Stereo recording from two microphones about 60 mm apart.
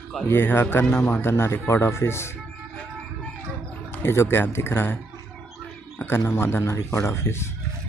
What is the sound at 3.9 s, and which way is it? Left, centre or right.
Speech, left.